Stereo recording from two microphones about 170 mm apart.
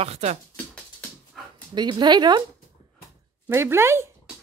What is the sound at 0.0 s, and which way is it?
Speech, 40° right (ahead or behind).